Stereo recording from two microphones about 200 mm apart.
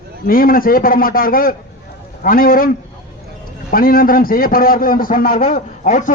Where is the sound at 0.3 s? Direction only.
45° left (ahead or behind).